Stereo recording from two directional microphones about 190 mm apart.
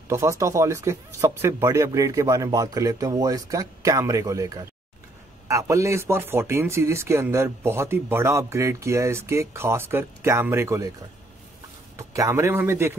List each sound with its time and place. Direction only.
0.1 s speech: 15° right (ahead or behind)
12.0 s speech: 15° right (ahead or behind)